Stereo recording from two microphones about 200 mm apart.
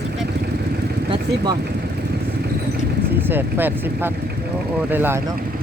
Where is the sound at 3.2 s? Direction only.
10° right (ahead or behind).